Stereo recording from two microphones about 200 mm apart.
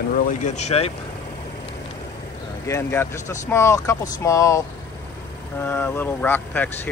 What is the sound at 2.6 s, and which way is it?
Speech, 15° left (ahead or behind).